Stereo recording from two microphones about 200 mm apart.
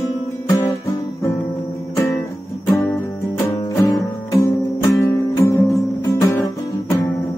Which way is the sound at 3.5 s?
15° left (ahead or behind).